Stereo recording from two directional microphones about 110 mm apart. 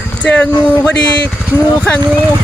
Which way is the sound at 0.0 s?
10° left (ahead or behind).